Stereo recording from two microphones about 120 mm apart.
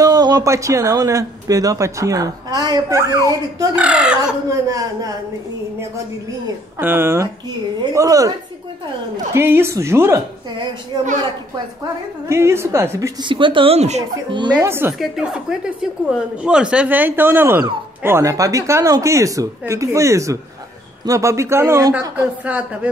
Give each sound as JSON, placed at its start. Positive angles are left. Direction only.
{"t": 0.0, "sound": "speech", "side_deg": -30}
{"t": 3.7, "sound": "speech", "side_deg": -10}
{"t": 4.5, "sound": "speech", "side_deg": -30}
{"t": 6.8, "sound": "speech", "side_deg": -20}
{"t": 9.4, "sound": "speech", "side_deg": -20}
{"t": 12.3, "sound": "speech", "side_deg": -20}
{"t": 13.2, "sound": "speech", "side_deg": -45}
{"t": 13.7, "sound": "speech", "side_deg": -70}
{"t": 14.3, "sound": "speech", "side_deg": -40}
{"t": 14.6, "sound": "speech", "side_deg": -20}
{"t": 15.0, "sound": "a woman's voice", "side_deg": -5}
{"t": 22.4, "sound": "speech", "side_deg": -10}